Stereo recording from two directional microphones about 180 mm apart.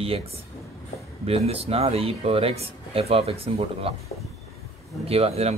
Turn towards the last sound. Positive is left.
turn(degrees=-35)  # may be behind; listen again after turning